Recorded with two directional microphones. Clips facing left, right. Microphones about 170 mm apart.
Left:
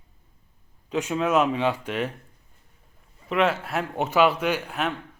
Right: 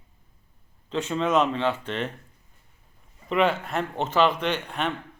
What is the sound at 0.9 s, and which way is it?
Speech, 10° left (ahead or behind).